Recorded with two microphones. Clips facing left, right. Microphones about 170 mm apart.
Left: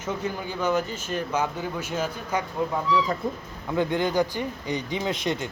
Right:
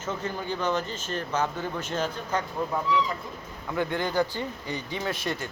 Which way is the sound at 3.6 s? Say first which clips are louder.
Left 4 dB; 15° left (ahead or behind).